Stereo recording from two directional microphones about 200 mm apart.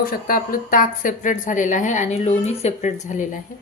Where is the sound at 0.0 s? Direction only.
45° left (ahead or behind).